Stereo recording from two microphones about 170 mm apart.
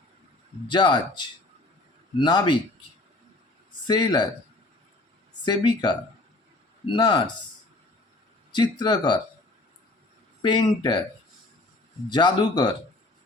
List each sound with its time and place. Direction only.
0.7 s speech: 25° left (ahead or behind)
3.8 s speech: 25° left (ahead or behind)
5.5 s speech: 25° left (ahead or behind)
8.5 s speech: 25° left (ahead or behind)
10.4 s speech: 25° left (ahead or behind)
12.0 s speech: 25° left (ahead or behind)